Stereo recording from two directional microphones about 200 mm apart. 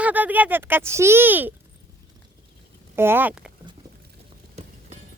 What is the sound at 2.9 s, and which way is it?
Speech, 10° right (ahead or behind).